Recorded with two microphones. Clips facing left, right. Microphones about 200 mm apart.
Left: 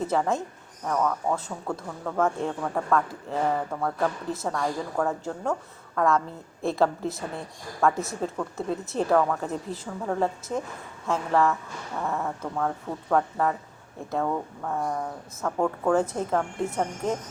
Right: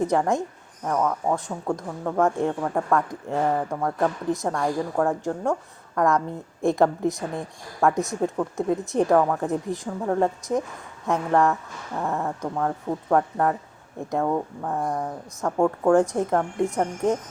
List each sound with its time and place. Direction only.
0.0 s speech: 15° right (ahead or behind)